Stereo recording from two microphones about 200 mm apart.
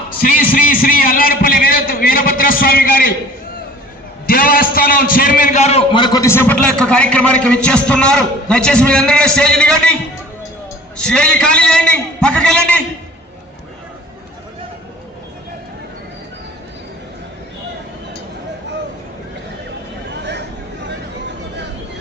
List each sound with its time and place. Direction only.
0.2 s a man's voice: 45° left (ahead or behind)
4.3 s a man's voice: 45° left (ahead or behind); by 12.8 s 5° left (ahead or behind)